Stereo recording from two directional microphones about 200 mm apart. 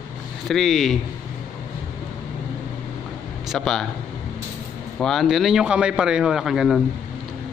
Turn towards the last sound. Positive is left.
turn(degrees=0)  # may be behind; listen again after turning